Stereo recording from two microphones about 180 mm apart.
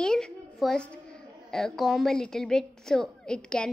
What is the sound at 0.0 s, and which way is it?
A woman's voice, 5° left (ahead or behind).